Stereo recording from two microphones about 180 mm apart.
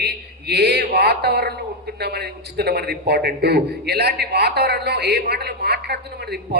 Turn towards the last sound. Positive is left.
turn(degrees=-65)  # may be behind; listen again after turning